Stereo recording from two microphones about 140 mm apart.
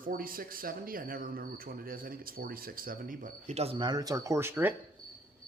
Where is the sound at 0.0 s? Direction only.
90° right; by 4.7 s 15° right (ahead or behind).